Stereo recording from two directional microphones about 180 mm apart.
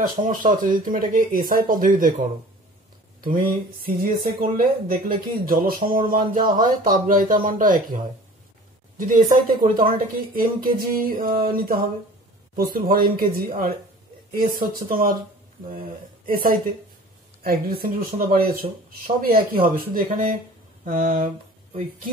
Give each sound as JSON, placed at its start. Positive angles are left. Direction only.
{"t": 0.0, "sound": "speech", "side_deg": -50}
{"t": 3.2, "sound": "speech", "side_deg": -50}
{"t": 16.3, "sound": "speech", "side_deg": -55}